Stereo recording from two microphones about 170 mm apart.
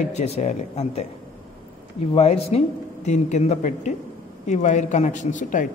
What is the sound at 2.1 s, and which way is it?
Speech, 35° left (ahead or behind).